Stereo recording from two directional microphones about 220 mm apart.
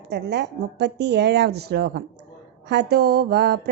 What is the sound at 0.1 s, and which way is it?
Mantra, 50° right (ahead or behind).